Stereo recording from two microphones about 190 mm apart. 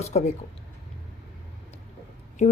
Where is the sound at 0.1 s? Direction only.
35° left (ahead or behind).